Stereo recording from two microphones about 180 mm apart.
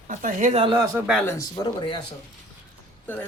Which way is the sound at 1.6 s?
20° left (ahead or behind).